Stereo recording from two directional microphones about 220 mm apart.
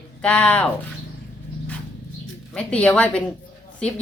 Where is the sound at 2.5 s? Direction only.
5° left (ahead or behind).